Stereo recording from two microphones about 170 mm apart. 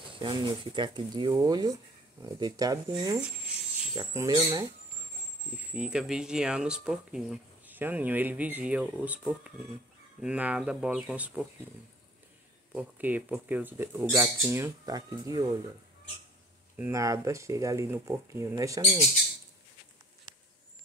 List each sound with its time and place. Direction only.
0.1 s speech: 30° right (ahead or behind)
5.6 s speech: 5° right (ahead or behind)
12.7 s speech: 10° right (ahead or behind)
16.7 s speech: 15° right (ahead or behind)